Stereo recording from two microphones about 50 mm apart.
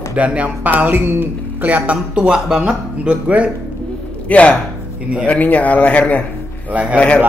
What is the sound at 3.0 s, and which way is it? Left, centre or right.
Speech, right.